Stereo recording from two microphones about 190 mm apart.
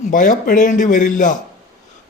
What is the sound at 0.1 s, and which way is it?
Speech, 45° left (ahead or behind).